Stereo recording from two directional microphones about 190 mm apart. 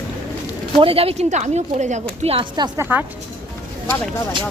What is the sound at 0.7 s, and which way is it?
Speech, 30° right (ahead or behind).